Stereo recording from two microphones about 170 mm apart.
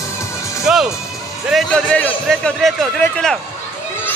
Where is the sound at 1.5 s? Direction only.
Centre (ahead or behind).